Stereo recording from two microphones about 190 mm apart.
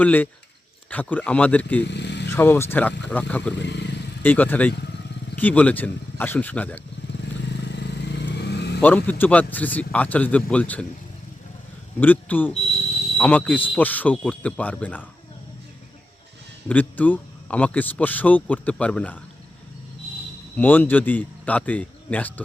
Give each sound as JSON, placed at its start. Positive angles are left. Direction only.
{"t": 0.0, "sound": "speech", "side_deg": 10}
{"t": 1.9, "sound": "a sound", "side_deg": 65}
{"t": 2.3, "sound": "speech", "side_deg": 10}
{"t": 3.5, "sound": "speech", "side_deg": 65}
{"t": 4.2, "sound": "speech", "side_deg": 10}
{"t": 7.6, "sound": "vehicle", "side_deg": 65}
{"t": 8.8, "sound": "speech", "side_deg": 10}
{"t": 11.9, "sound": "speech", "side_deg": 10}
{"t": 16.6, "sound": "speech", "side_deg": 10}
{"t": 20.6, "sound": "speech", "side_deg": 10}